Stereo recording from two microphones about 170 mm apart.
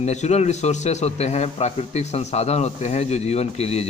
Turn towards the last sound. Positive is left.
turn(degrees=40)  # may be behind; listen again after turning